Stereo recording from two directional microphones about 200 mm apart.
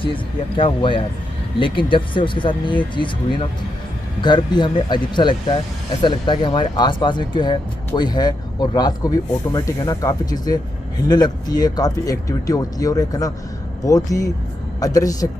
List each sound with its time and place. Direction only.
0.0 s speech: 25° left (ahead or behind)